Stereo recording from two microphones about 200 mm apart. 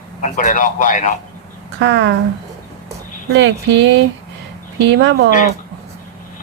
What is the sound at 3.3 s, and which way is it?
Speech, 65° right (ahead or behind).